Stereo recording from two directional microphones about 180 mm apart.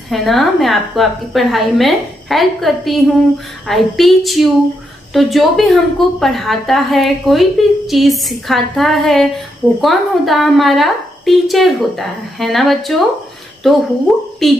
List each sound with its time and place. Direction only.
0.1 s a woman's voice: centre (ahead or behind)